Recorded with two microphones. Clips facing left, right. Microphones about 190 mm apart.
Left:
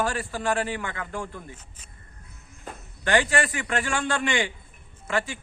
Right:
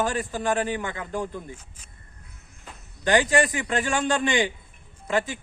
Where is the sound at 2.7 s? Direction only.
50° left (ahead or behind).